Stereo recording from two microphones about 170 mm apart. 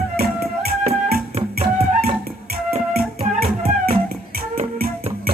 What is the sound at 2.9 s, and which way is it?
Music, 60° right (ahead or behind).